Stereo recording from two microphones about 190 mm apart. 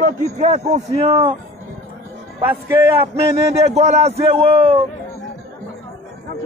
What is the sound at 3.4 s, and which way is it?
A man's voice, 35° right (ahead or behind).